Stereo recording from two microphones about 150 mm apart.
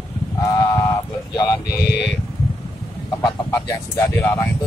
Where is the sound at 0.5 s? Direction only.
25° left (ahead or behind).